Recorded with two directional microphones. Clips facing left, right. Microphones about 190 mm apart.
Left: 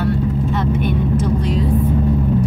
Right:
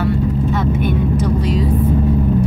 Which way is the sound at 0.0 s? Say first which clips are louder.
Right 1 dB; 5° right (ahead or behind).